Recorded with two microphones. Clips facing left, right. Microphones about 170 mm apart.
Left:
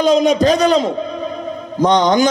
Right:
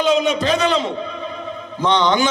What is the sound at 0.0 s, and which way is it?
A man's voice, 40° left (ahead or behind).